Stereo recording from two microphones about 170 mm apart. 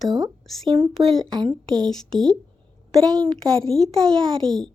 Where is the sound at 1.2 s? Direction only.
25° right (ahead or behind).